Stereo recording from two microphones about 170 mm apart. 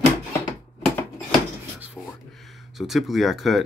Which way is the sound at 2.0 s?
5° right (ahead or behind).